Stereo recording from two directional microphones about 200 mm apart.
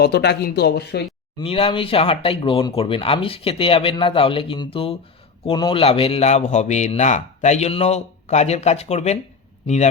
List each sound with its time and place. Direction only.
0.0 s speech: 55° left (ahead or behind)
1.4 s a man's voice: 30° left (ahead or behind)